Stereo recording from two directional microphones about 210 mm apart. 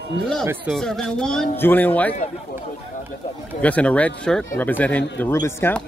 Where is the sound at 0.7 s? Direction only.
Centre (ahead or behind).